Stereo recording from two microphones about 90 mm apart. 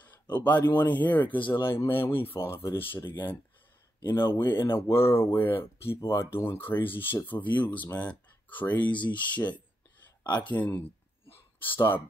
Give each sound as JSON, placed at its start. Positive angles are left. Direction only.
{"t": 0.4, "sound": "speech", "side_deg": 20}
{"t": 8.9, "sound": "speech", "side_deg": 60}
{"t": 9.2, "sound": "speech", "side_deg": 15}
{"t": 10.3, "sound": "speech", "side_deg": 55}
{"t": 11.2, "sound": "a sound", "side_deg": 25}